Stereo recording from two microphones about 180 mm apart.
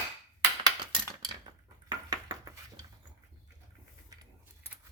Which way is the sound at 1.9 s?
20° right (ahead or behind).